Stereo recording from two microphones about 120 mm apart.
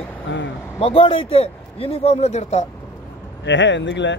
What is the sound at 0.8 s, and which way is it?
Speech, 50° left (ahead or behind).